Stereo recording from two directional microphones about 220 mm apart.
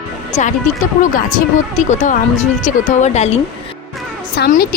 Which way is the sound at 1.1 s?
35° left (ahead or behind).